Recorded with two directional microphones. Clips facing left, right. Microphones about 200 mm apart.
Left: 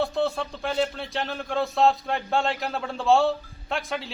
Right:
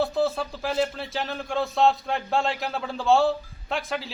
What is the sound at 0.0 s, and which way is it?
Speech, centre (ahead or behind).